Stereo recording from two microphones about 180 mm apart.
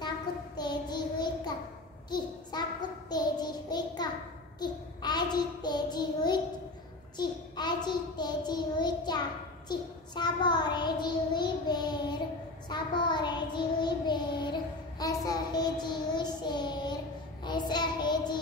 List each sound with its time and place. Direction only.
0.6 s child singing: 25° left (ahead or behind)
2.0 s a sound: 25° left (ahead or behind)
3.1 s child singing: 25° left (ahead or behind)